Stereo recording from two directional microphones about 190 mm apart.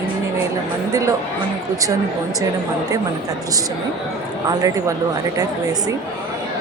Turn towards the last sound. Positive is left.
turn(degrees=-20)  # may be behind; listen again after turning